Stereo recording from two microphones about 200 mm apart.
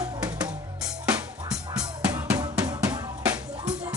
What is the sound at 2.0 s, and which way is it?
Drum, 5° right (ahead or behind).